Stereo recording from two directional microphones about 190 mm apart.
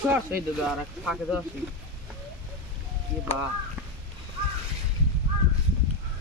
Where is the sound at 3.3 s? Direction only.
35° left (ahead or behind).